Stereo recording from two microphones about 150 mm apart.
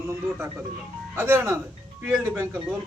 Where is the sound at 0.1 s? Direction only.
15° right (ahead or behind).